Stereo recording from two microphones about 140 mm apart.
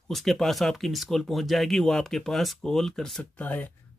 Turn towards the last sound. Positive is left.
turn(degrees=10)  # may be behind; listen again after turning